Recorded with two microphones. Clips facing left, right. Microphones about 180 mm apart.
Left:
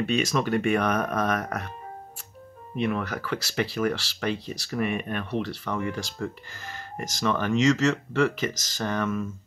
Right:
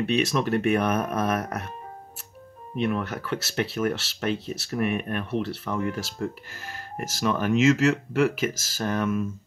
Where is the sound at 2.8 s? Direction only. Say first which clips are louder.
Right 1 dB; centre (ahead or behind).